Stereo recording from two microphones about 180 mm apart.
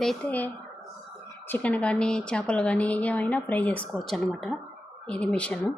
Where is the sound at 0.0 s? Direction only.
5° left (ahead or behind).